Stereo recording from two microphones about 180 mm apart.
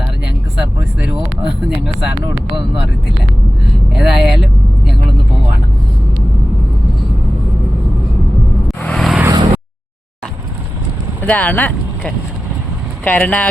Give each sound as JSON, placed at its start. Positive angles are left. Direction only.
{"t": 0.5, "sound": "speech", "side_deg": -5}
{"t": 8.6, "sound": "vehicle", "side_deg": 5}
{"t": 9.2, "sound": "a sound", "side_deg": -25}
{"t": 11.2, "sound": "speech", "side_deg": 10}